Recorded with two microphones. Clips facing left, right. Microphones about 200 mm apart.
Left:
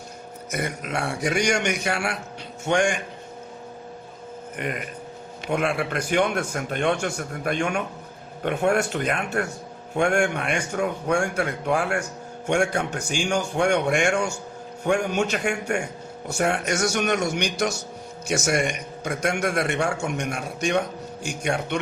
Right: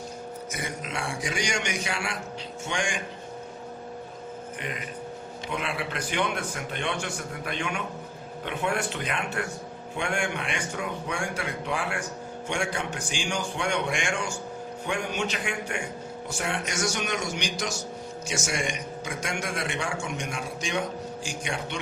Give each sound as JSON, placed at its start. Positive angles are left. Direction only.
{"t": 0.5, "sound": "a man's voice", "side_deg": 60}
{"t": 4.5, "sound": "a man's voice", "side_deg": 55}
{"t": 13.1, "sound": "a man's voice", "side_deg": 45}
{"t": 13.7, "sound": "a man's voice", "side_deg": 65}
{"t": 14.8, "sound": "a man's voice", "side_deg": 45}
{"t": 16.6, "sound": "a man's voice", "side_deg": 65}